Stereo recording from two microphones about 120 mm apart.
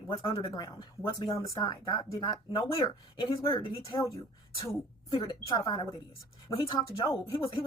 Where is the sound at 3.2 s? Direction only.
50° left (ahead or behind).